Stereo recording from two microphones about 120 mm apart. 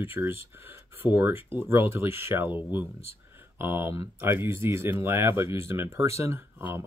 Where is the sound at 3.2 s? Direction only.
20° right (ahead or behind).